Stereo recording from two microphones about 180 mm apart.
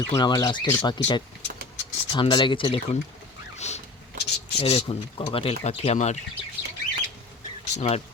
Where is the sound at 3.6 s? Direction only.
40° left (ahead or behind).